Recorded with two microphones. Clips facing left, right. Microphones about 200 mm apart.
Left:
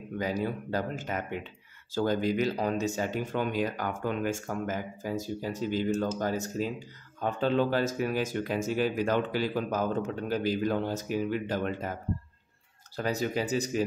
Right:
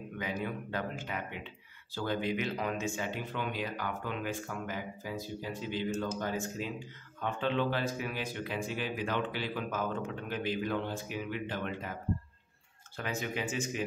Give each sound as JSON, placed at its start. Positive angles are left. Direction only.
{"t": 0.2, "sound": "speech", "side_deg": 40}